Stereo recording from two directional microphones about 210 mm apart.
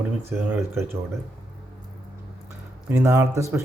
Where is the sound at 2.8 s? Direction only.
10° right (ahead or behind).